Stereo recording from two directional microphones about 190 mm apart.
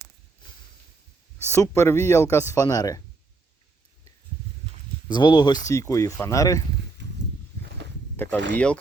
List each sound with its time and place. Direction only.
1.5 s speech: 15° left (ahead or behind)
5.0 s speech: 25° left (ahead or behind)
7.0 s a sound: 65° right (ahead or behind)
8.1 s speech: 10° left (ahead or behind)